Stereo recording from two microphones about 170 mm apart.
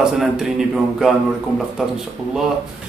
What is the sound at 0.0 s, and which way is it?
A man's voice, 5° right (ahead or behind).